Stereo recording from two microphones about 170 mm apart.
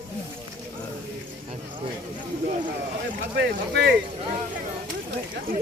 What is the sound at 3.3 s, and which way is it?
Speech, 75° right (ahead or behind).